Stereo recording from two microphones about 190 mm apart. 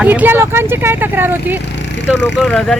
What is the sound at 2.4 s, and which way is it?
Speech, 5° left (ahead or behind).